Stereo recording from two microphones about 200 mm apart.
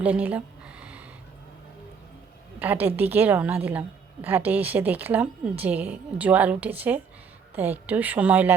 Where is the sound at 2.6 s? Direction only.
10° right (ahead or behind).